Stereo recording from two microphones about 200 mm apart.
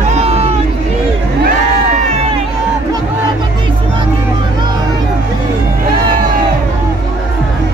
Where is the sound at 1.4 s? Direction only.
45° right (ahead or behind).